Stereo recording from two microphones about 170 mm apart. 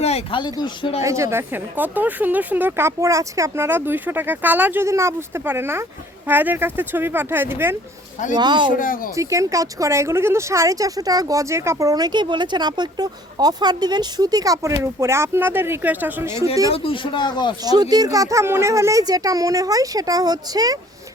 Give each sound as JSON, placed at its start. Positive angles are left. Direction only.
{"t": 0.0, "sound": "speech", "side_deg": 35}
{"t": 1.0, "sound": "a woman's voice", "side_deg": -15}
{"t": 8.4, "sound": "speech", "side_deg": -25}
{"t": 8.7, "sound": "speech", "side_deg": 55}
{"t": 9.1, "sound": "a woman's voice", "side_deg": -20}
{"t": 16.7, "sound": "speech", "side_deg": 30}
{"t": 17.7, "sound": "speech", "side_deg": -25}